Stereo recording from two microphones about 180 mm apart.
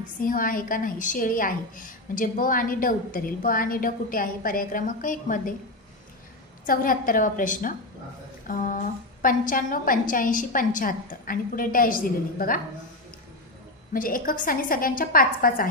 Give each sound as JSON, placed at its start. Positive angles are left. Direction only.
{"t": 0.0, "sound": "a woman's voice", "side_deg": 50}
{"t": 6.6, "sound": "a woman's voice", "side_deg": 50}
{"t": 13.9, "sound": "a woman's voice", "side_deg": 50}